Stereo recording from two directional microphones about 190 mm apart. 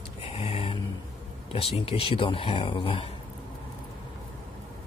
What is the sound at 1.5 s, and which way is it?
Speech, 30° left (ahead or behind).